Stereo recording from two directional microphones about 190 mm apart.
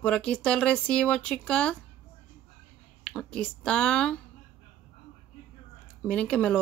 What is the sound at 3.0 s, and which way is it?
Speech, 5° left (ahead or behind).